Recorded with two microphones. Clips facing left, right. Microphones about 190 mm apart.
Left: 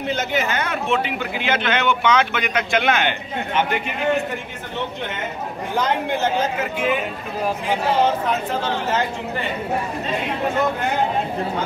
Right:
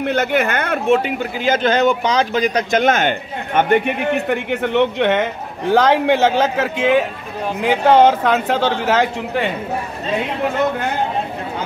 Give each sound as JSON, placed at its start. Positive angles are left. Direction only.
{"t": 0.0, "sound": "speech", "side_deg": -60}